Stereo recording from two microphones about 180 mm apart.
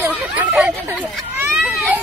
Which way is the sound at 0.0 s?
10° right (ahead or behind).